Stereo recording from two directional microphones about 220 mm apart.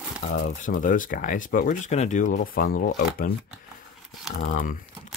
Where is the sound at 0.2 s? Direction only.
30° left (ahead or behind).